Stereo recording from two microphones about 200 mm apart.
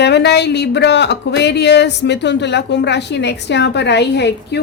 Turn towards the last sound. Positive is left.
turn(degrees=55)  # may be behind; listen again after turning